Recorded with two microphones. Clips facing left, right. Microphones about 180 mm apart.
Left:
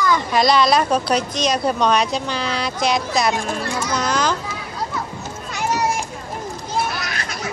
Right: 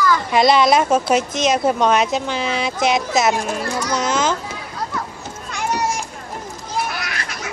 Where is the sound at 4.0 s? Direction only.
20° right (ahead or behind).